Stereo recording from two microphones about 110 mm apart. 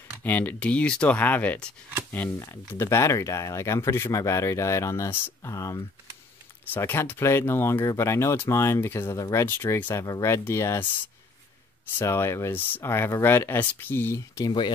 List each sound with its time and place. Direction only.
0.2 s speech: 15° left (ahead or behind)
2.3 s speech: 35° left (ahead or behind)
12.0 s speech: 25° left (ahead or behind)